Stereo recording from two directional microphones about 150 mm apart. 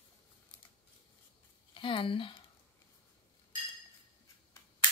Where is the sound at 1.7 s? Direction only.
35° left (ahead or behind).